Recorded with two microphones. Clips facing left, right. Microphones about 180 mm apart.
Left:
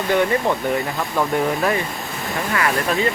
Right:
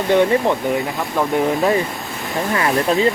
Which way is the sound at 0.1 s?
20° right (ahead or behind).